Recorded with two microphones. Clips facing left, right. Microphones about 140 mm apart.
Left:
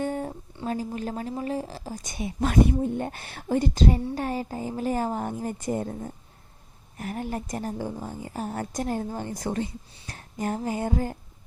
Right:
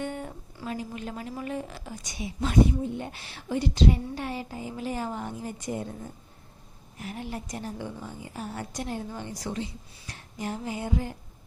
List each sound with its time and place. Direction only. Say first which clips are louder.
0.0 s a sound: left 5 dB; 40° left (ahead or behind)
0.5 s a woman's voice: left 4 dB; 35° left (ahead or behind)
2.0 s speech: left 4 dB; 50° left (ahead or behind)